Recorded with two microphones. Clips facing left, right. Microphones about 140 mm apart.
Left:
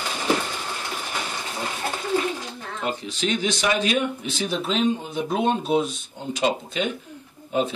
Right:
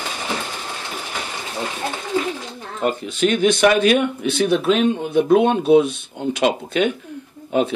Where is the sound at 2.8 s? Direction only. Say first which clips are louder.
Right 7 dB; 55° right (ahead or behind).